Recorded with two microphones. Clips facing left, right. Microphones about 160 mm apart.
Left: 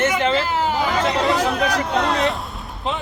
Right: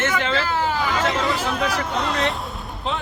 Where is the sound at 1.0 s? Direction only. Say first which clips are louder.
Left 3 dB; centre (ahead or behind).